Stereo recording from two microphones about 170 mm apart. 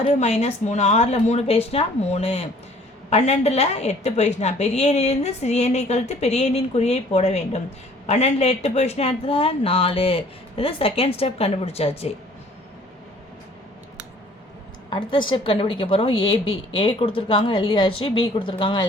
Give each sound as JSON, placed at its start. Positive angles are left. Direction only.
{"t": 0.0, "sound": "a woman's voice", "side_deg": 40}
{"t": 14.8, "sound": "a woman's voice", "side_deg": 30}